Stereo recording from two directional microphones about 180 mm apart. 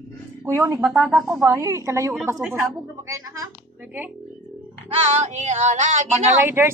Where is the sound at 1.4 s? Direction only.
20° right (ahead or behind).